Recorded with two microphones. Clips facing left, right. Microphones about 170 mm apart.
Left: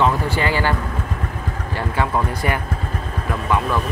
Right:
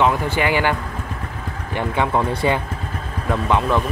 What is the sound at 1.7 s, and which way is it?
Speech, 20° right (ahead or behind).